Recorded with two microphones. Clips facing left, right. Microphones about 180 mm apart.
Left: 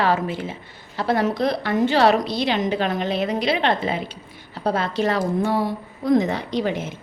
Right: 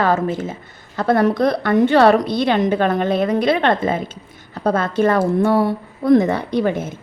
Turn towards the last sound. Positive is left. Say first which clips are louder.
# right 4 dB
turn(degrees=-50)  # may be behind; listen again after turning